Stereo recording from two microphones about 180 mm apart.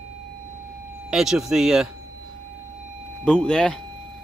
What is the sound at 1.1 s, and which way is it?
Speech, 5° right (ahead or behind).